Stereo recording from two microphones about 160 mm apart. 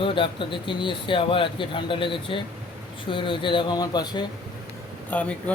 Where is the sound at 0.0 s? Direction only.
30° left (ahead or behind).